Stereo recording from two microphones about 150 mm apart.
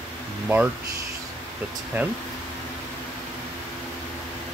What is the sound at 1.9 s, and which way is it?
Speech, 15° right (ahead or behind).